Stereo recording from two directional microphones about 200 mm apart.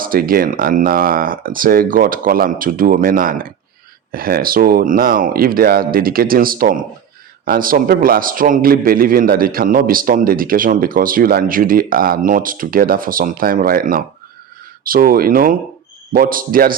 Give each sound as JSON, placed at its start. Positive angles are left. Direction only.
{"t": 0.0, "sound": "a man's voice", "side_deg": -45}